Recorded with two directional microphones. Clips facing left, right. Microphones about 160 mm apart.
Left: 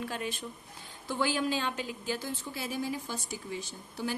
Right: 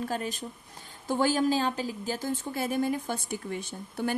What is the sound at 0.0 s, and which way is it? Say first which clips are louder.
A woman's voice: right 4 dB; 40° right (ahead or behind).